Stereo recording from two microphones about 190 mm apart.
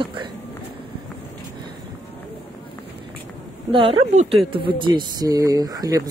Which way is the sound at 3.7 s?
30° right (ahead or behind).